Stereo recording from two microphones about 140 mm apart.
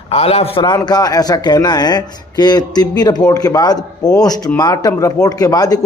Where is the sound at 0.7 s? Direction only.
30° left (ahead or behind).